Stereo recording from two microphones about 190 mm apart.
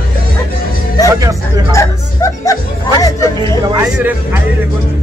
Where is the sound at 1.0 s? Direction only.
20° left (ahead or behind).